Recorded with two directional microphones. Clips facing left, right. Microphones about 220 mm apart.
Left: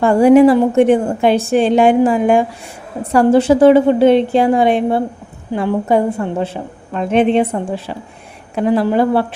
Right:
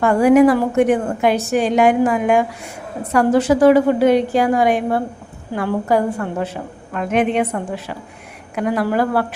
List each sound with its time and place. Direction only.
0.0 s a woman's voice: 30° left (ahead or behind)